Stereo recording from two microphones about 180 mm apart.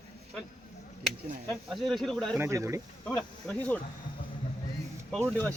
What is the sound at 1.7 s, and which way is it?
Speech, centre (ahead or behind).